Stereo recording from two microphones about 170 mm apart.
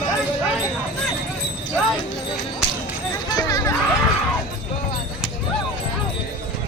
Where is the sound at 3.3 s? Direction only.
20° left (ahead or behind).